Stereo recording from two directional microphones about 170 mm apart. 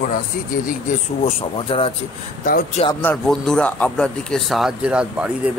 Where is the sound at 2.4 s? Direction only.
60° left (ahead or behind).